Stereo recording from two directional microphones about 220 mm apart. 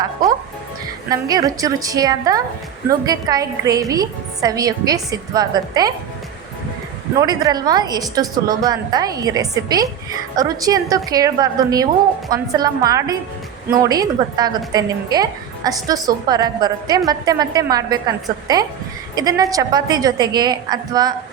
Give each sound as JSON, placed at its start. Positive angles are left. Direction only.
{"t": 1.1, "sound": "a woman's voice", "side_deg": -15}
{"t": 7.2, "sound": "a woman's voice", "side_deg": -15}